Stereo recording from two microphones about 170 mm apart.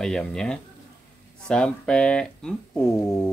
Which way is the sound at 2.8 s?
15° left (ahead or behind).